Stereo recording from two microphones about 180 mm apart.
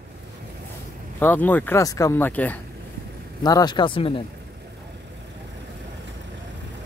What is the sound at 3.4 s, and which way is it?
Speech, 20° left (ahead or behind).